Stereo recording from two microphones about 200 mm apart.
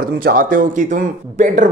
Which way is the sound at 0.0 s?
45° right (ahead or behind).